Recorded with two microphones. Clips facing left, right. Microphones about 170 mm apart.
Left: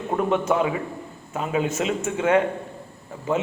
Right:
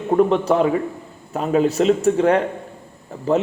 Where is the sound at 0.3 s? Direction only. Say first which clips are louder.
Right 4 dB; 35° right (ahead or behind).